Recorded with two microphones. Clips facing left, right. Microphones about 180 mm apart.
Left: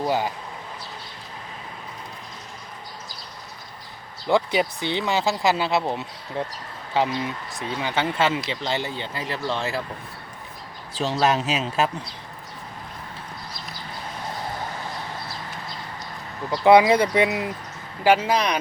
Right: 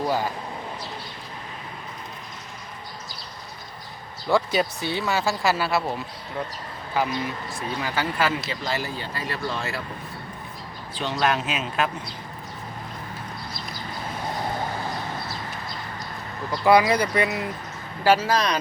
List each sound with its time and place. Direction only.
0.0 s speech: 15° left (ahead or behind)
4.3 s speech: 15° left (ahead or behind)
10.9 s speech: 30° left (ahead or behind)
16.5 s speech: 20° left (ahead or behind)